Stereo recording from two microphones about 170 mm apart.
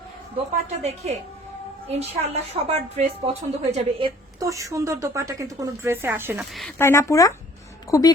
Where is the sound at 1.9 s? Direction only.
40° right (ahead or behind).